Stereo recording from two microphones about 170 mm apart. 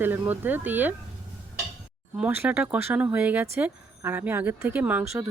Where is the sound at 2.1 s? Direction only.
10° right (ahead or behind).